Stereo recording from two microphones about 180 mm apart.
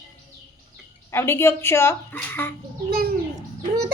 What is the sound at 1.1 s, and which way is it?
A woman's voice, 15° left (ahead or behind).